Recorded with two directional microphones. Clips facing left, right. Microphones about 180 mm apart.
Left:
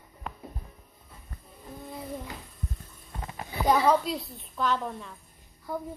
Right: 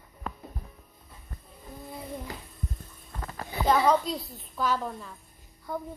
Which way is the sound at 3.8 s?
5° left (ahead or behind).